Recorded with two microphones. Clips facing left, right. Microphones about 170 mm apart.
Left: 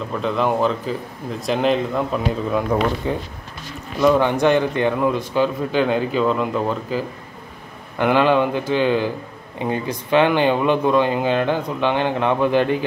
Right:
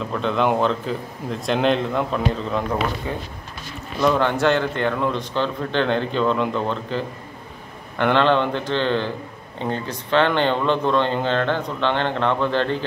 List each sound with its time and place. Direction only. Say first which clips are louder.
0.1 s a man's voice: even; centre (ahead or behind)
3.1 s speech: left 4 dB; 20° left (ahead or behind)